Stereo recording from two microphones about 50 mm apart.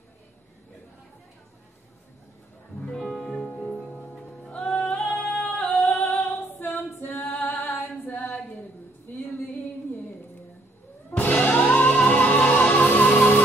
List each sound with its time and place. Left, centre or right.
2.8 s music: centre
4.5 s music: left
5.1 s singing: left
6.1 s female singing: left
7.3 s a capella: left
9.1 s music: left
11.1 s music: left
11.8 s music: centre
12.1 s music: left